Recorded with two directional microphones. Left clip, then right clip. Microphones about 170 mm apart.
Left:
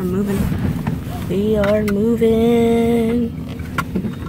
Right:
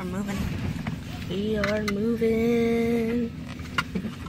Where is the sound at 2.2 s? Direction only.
10° right (ahead or behind).